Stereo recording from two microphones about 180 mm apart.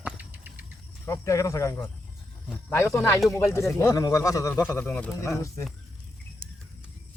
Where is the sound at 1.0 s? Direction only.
15° left (ahead or behind).